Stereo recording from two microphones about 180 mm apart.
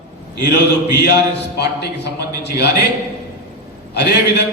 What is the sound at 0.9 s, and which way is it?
A man's voice, 70° left (ahead or behind).